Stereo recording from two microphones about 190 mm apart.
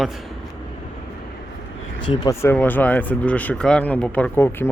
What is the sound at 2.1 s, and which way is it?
Speech, 20° left (ahead or behind).